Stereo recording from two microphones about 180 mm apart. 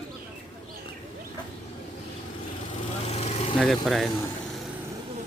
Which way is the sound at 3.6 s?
Centre (ahead or behind).